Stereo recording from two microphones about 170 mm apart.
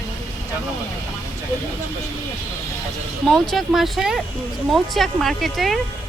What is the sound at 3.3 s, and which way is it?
Speech, centre (ahead or behind).